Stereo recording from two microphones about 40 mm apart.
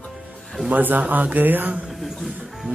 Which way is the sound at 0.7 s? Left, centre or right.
Right.